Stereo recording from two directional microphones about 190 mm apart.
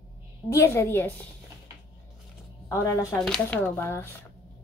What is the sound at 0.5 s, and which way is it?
Speech, 15° left (ahead or behind).